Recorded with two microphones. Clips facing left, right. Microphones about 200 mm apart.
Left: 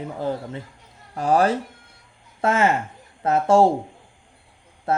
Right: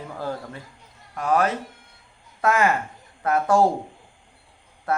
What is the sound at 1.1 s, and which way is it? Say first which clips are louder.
Speech: left 3 dB; 30° left (ahead or behind).